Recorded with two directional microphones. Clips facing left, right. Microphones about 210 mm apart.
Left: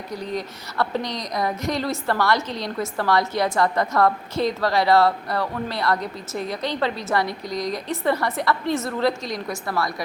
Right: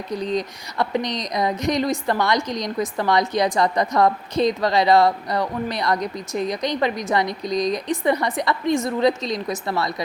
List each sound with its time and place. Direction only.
0.1 s a woman's voice: 20° right (ahead or behind)